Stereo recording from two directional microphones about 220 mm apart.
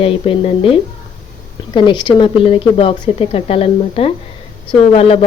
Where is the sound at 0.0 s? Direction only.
25° left (ahead or behind).